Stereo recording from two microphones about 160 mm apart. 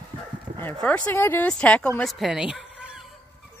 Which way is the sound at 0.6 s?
10° left (ahead or behind).